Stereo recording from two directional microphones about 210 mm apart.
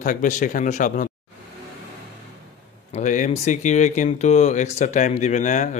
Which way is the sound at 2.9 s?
35° left (ahead or behind).